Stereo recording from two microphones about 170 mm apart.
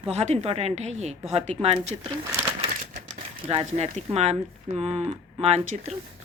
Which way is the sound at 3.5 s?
35° right (ahead or behind).